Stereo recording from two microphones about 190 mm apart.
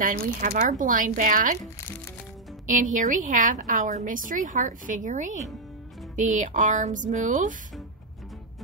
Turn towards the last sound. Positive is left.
turn(degrees=-40)  # may be behind; listen again after turning